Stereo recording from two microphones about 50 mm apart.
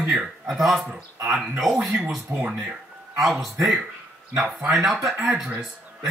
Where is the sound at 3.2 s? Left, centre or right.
Centre.